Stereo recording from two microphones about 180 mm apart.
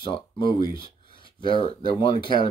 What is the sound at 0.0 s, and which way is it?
Speech, 30° left (ahead or behind).